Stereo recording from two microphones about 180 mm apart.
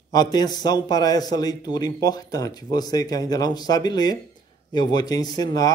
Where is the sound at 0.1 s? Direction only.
20° left (ahead or behind).